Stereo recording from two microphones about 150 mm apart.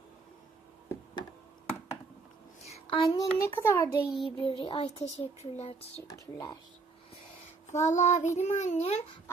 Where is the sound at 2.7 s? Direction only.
35° left (ahead or behind); by 4.0 s 15° left (ahead or behind).